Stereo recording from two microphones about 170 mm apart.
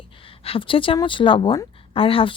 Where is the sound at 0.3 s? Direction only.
35° left (ahead or behind).